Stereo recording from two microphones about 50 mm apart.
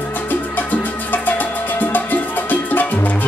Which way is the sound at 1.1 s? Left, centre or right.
Left.